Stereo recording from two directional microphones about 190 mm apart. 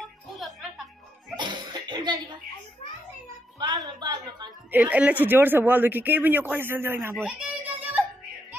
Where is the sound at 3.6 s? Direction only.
20° right (ahead or behind).